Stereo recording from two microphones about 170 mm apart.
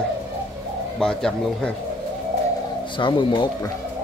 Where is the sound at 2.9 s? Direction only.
30° left (ahead or behind).